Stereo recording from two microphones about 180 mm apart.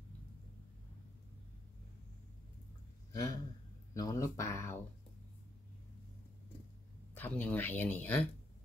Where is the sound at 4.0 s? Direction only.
20° left (ahead or behind).